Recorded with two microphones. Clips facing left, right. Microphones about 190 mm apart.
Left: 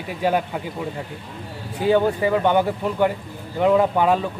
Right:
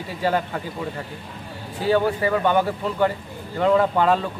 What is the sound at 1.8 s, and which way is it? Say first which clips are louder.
A man's voice: left 2 dB; 15° left (ahead or behind).